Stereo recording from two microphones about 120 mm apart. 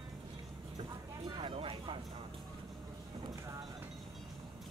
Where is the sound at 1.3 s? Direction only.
45° right (ahead or behind).